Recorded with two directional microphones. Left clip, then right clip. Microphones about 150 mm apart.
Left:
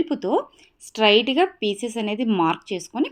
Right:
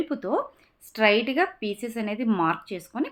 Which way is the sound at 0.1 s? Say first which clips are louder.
Left 4 dB; 30° left (ahead or behind).